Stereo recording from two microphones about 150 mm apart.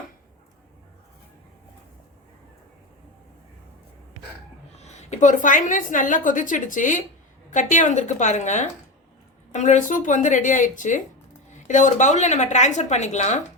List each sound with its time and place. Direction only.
4.8 s a woman's voice: 50° left (ahead or behind)